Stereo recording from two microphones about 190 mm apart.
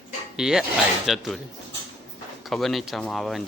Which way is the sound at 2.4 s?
Centre (ahead or behind).